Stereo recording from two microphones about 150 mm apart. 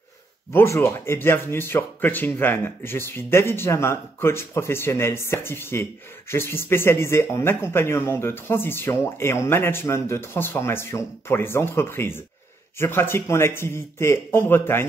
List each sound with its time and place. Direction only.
0.5 s speech: 15° left (ahead or behind)